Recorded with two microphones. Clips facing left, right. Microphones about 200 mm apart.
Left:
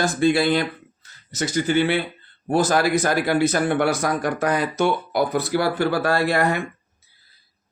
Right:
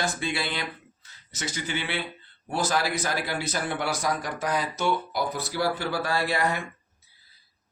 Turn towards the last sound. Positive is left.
turn(degrees=60)  # may be behind; listen again after turning